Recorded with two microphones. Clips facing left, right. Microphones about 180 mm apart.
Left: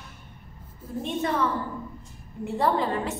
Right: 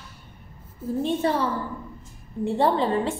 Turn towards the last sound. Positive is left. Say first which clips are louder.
# right 3 dB
turn(degrees=-30)  # may be behind; listen again after turning